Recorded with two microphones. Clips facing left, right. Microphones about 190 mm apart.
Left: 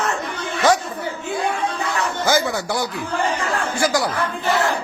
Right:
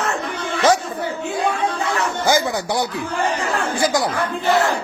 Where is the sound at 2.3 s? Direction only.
15° right (ahead or behind).